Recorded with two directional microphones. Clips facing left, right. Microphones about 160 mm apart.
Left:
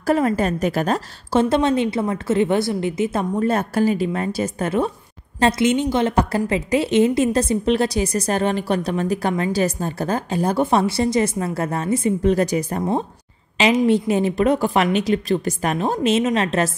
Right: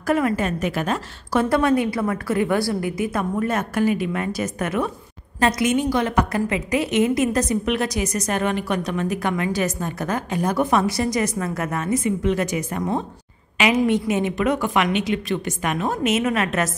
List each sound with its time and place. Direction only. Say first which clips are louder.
0.0 s a woman's voice: left 2 dB; 30° left (ahead or behind)
1.4 s a woman's voice: left 1 dB; 25° left (ahead or behind)